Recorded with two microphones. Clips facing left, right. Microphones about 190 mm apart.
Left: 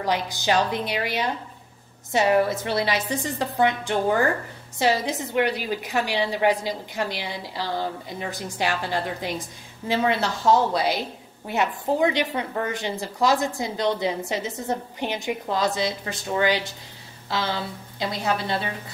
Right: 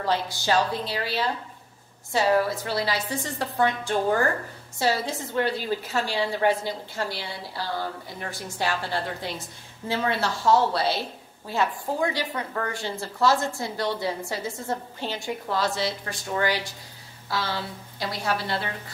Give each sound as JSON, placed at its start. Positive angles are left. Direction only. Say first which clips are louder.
{"t": 0.0, "sound": "a woman's voice", "louder": "left 1 dB", "side_deg": 15}